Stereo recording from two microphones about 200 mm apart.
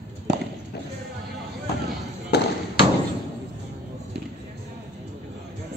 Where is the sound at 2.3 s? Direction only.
55° left (ahead or behind).